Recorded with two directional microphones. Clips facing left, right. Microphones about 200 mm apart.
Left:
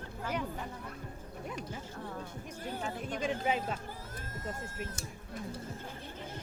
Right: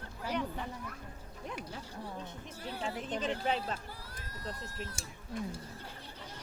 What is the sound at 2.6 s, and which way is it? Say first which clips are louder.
Speech: even; 45° left (ahead or behind).